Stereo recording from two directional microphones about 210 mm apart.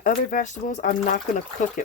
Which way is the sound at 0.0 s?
40° left (ahead or behind).